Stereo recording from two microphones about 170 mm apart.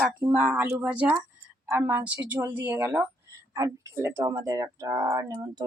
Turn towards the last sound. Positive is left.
turn(degrees=-20)  # may be behind; listen again after turning